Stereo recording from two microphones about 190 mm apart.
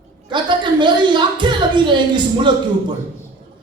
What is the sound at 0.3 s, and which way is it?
A woman's voice, 25° right (ahead or behind).